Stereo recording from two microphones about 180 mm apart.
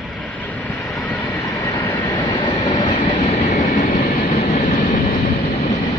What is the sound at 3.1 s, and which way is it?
Train, 35° left (ahead or behind).